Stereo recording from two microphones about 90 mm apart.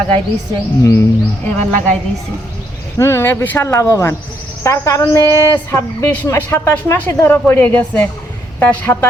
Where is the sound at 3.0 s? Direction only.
30° left (ahead or behind).